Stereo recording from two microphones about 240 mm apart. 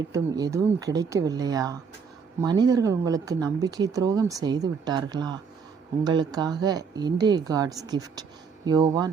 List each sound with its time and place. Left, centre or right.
0.1 s speech: centre